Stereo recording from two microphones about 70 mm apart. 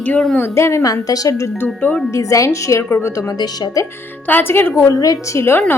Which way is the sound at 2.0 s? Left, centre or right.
Left.